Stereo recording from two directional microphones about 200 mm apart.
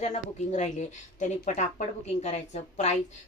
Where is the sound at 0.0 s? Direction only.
35° left (ahead or behind).